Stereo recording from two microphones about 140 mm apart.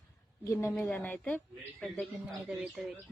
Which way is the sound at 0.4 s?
25° left (ahead or behind).